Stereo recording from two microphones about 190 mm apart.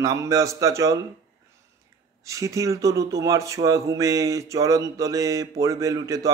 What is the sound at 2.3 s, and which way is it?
Speech, 15° right (ahead or behind).